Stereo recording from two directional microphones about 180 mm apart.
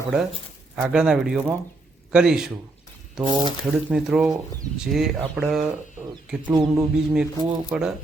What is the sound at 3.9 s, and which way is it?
A man's voice, 5° right (ahead or behind).